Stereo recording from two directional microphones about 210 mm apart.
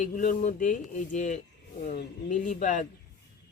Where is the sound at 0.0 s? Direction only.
40° left (ahead or behind).